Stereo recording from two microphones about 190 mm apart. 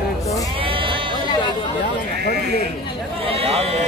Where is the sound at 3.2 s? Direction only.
30° right (ahead or behind).